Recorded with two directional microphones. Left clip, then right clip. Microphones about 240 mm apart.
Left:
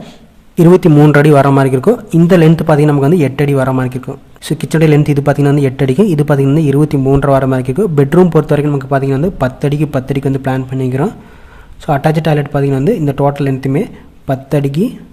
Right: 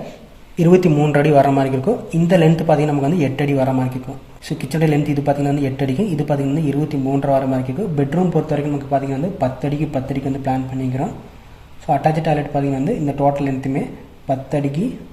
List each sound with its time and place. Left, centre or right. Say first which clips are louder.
0.5 s a man's voice: left 6 dB; left